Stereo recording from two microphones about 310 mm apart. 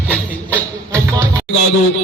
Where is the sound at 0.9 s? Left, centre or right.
Centre.